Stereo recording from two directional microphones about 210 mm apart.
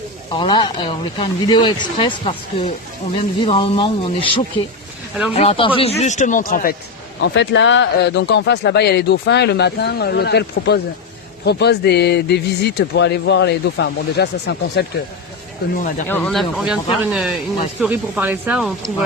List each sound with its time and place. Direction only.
0.3 s speech: 20° left (ahead or behind); by 6.7 s 40° left (ahead or behind)
7.2 s speech: 60° left (ahead or behind)
16.0 s speech: 5° left (ahead or behind)